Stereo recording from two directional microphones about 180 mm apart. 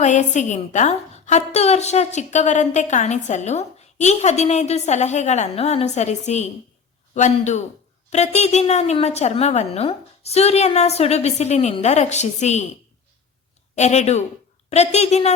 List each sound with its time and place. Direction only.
0.0 s a woman's voice: 40° left (ahead or behind)
13.7 s a woman's voice: 40° left (ahead or behind)